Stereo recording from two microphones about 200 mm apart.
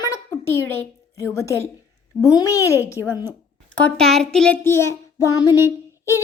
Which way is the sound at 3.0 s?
10° right (ahead or behind).